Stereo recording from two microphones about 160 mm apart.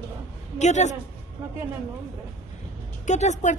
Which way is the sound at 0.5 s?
45° left (ahead or behind).